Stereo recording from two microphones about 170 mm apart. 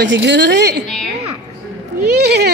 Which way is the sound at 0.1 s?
90° right.